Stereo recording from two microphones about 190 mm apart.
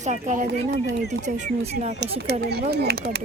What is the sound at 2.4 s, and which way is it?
Speech, 60° right (ahead or behind).